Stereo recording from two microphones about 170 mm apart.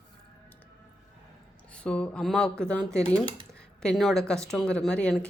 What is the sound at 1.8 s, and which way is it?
Speech, 5° left (ahead or behind).